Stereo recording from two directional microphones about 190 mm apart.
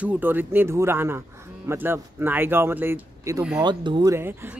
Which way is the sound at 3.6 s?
25° right (ahead or behind).